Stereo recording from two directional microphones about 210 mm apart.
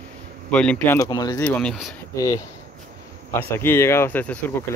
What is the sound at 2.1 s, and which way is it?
Speech, 15° left (ahead or behind).